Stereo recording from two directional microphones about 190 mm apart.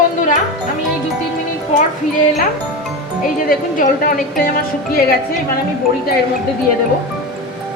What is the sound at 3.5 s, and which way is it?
Speech, 50° left (ahead or behind).